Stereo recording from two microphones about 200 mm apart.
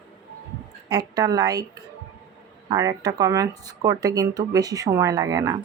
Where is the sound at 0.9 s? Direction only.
20° right (ahead or behind).